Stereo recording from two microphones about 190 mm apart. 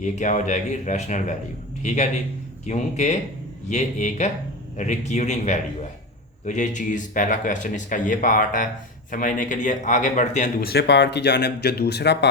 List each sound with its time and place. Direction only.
0.0 s speech: 40° left (ahead or behind)
10.7 s speech: 60° left (ahead or behind)